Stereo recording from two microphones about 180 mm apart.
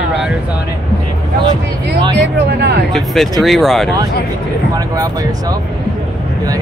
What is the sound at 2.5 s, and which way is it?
Speech, 65° right (ahead or behind).